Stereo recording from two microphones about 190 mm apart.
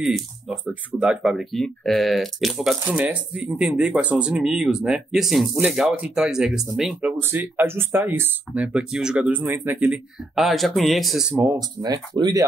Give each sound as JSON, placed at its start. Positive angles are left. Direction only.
{"t": 0.0, "sound": "speech", "side_deg": -5}
{"t": 11.3, "sound": "speech", "side_deg": -15}